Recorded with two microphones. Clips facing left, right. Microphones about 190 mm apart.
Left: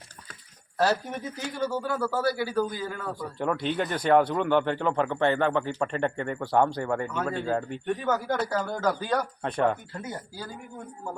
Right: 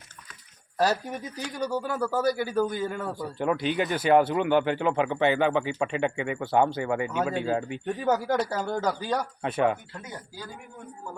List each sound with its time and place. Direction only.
0.8 s speech: 15° right (ahead or behind)
3.2 s speech: 5° right (ahead or behind)
8.0 s speech: 35° right (ahead or behind)
9.0 s speech: 5° right (ahead or behind)